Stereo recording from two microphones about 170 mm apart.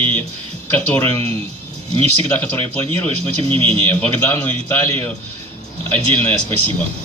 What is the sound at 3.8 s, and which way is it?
A man's voice, 10° left (ahead or behind).